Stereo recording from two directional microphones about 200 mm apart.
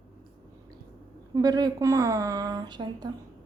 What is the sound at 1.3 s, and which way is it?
Speech, 20° right (ahead or behind).